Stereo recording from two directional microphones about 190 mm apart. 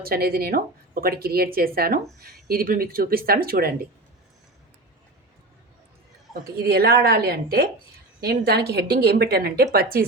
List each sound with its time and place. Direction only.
0.0 s speech: 50° right (ahead or behind)
6.6 s a woman's voice: 55° right (ahead or behind)